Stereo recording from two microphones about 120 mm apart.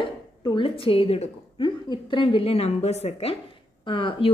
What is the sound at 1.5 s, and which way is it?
A woman's voice, 40° left (ahead or behind).